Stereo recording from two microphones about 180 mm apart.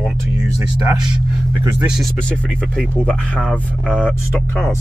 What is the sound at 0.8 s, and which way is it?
Speech, 25° right (ahead or behind).